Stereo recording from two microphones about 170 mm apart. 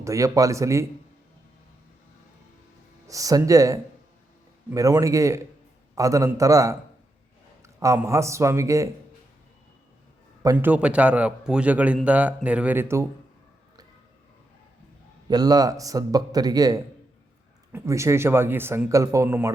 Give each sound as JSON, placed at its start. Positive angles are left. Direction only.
{"t": 0.0, "sound": "a man's voice", "side_deg": -20}
{"t": 3.1, "sound": "a man's voice", "side_deg": -20}
{"t": 10.4, "sound": "a man's voice", "side_deg": -20}
{"t": 10.7, "sound": "a man's voice", "side_deg": -5}
{"t": 15.3, "sound": "a man's voice", "side_deg": -20}